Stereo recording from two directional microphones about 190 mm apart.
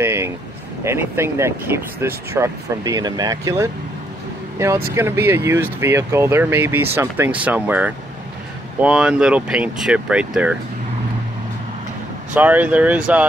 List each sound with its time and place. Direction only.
0.0 s a sound: 15° right (ahead or behind)
0.8 s speech: 15° right (ahead or behind)
12.4 s speech: 10° right (ahead or behind)